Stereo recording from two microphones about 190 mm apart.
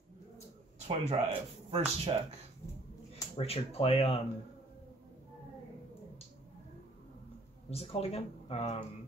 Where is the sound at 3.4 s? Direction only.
30° left (ahead or behind).